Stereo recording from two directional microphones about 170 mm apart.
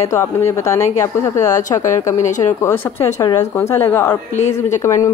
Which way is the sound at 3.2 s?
20° left (ahead or behind).